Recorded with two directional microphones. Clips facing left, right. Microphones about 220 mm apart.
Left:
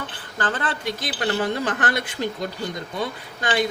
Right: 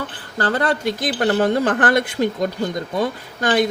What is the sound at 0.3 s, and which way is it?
Speech, 40° right (ahead or behind).